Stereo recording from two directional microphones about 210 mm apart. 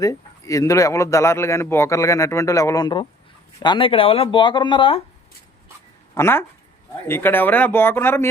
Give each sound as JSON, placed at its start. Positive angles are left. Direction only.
{"t": 0.0, "sound": "a man's voice", "side_deg": 15}
{"t": 6.1, "sound": "a man's voice", "side_deg": 10}